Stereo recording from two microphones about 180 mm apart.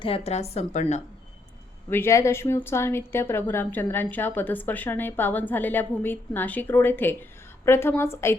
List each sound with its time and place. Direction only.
0.0 s a woman's voice: 35° left (ahead or behind)
1.9 s a woman's voice: 15° left (ahead or behind)